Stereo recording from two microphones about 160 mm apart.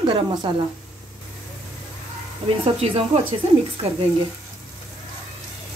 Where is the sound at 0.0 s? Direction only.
30° right (ahead or behind).